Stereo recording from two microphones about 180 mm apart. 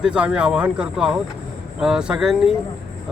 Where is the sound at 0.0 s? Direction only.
5° right (ahead or behind).